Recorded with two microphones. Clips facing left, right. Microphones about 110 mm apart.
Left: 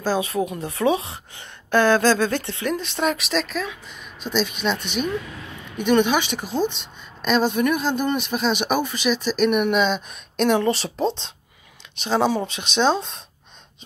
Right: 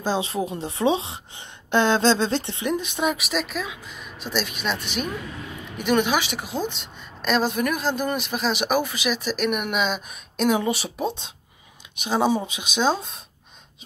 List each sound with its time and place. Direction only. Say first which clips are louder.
0.0 s a woman's voice: left 2 dB; 25° right (ahead or behind); by 13.2 s 5° right (ahead or behind)